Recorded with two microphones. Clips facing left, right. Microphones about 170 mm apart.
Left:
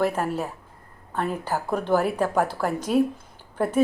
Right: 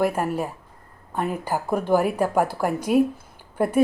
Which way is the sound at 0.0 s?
10° right (ahead or behind).